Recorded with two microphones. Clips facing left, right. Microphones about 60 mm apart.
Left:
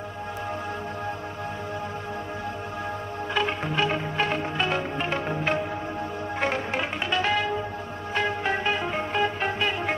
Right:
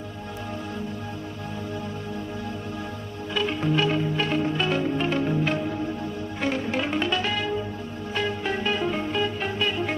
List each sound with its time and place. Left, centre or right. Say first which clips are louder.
3.3 s music: right 2 dB; left
6.8 s music: right 3 dB; left
7.2 s music: left 2 dB; left